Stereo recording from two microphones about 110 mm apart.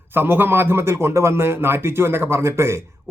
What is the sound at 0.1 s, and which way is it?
Speech, 20° right (ahead or behind).